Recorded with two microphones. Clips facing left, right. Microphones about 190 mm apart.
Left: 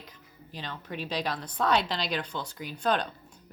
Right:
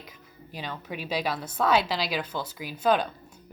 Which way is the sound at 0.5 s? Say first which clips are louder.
Right 2 dB; 10° right (ahead or behind).